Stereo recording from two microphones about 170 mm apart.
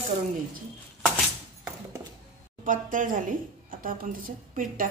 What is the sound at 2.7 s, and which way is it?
A woman's voice, 50° right (ahead or behind).